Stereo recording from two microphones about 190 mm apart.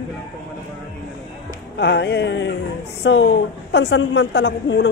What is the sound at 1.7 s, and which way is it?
A man's voice, 60° left (ahead or behind).